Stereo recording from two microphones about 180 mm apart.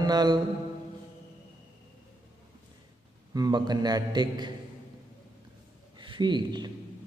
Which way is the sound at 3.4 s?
25° right (ahead or behind).